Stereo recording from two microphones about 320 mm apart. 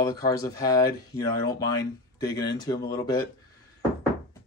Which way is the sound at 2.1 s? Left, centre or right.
Centre.